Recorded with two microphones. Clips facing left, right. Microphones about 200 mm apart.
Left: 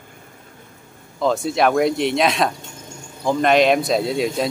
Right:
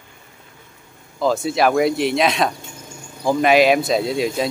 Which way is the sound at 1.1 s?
Centre (ahead or behind).